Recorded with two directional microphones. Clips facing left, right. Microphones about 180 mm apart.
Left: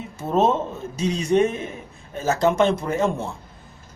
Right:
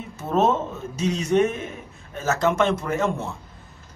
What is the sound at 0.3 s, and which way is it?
Speech, 30° left (ahead or behind).